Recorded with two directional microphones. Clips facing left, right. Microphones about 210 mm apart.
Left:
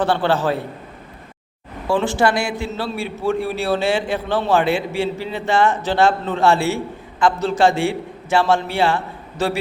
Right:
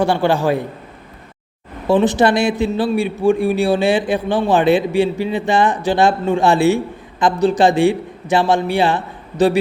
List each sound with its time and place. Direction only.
0.0 s a man's voice: 10° right (ahead or behind)
1.9 s a man's voice: 20° right (ahead or behind)